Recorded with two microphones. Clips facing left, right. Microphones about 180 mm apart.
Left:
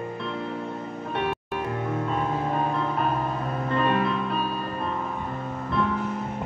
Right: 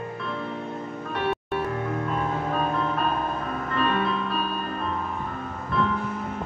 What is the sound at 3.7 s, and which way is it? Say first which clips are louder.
Music: left 2 dB; 25° left (ahead or behind).